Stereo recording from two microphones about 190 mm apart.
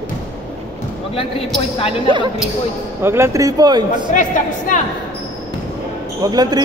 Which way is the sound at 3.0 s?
15° right (ahead or behind).